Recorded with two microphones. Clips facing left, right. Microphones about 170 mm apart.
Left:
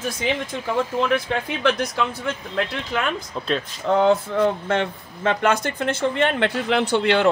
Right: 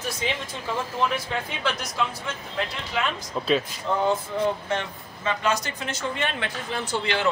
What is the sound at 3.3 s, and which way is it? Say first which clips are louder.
Speech: right 1 dB; 5° right (ahead or behind).